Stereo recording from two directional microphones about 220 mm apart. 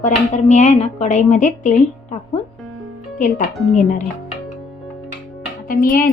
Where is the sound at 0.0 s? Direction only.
35° left (ahead or behind).